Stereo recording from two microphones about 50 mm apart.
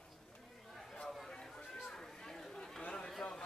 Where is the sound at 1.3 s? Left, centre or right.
Centre.